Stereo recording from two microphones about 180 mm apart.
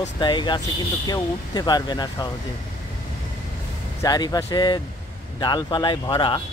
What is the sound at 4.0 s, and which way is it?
Speech, 20° left (ahead or behind).